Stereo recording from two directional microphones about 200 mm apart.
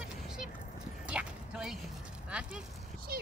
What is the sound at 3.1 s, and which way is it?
Speech, 50° right (ahead or behind).